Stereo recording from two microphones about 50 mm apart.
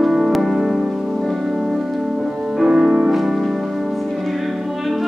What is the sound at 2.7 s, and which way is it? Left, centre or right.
Music, right.